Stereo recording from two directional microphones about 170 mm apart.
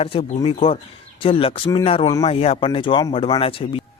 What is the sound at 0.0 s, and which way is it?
A man's voice, 35° left (ahead or behind).